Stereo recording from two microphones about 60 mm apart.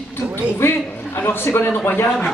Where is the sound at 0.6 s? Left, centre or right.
Left.